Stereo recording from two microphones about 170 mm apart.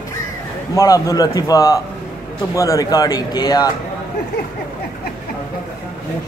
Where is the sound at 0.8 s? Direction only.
20° left (ahead or behind).